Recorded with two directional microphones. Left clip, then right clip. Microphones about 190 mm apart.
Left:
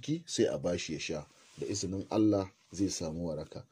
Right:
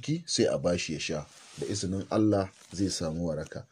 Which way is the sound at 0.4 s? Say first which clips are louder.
Right 4 dB; 10° left (ahead or behind).